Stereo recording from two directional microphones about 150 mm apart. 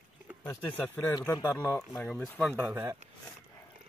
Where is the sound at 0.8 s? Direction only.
15° left (ahead or behind).